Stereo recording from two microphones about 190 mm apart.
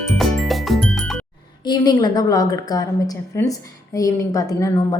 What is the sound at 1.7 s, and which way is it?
A woman's voice, 20° left (ahead or behind).